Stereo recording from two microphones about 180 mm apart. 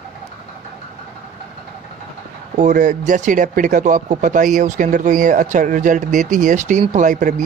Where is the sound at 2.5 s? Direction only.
45° right (ahead or behind).